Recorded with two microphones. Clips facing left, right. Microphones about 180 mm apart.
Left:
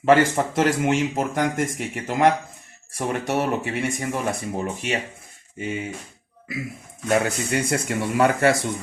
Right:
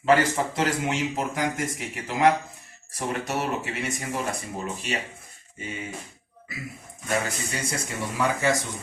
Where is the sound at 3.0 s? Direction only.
60° left (ahead or behind).